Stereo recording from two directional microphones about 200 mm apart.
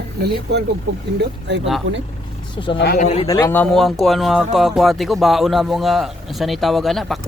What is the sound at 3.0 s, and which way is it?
Speech, 30° left (ahead or behind).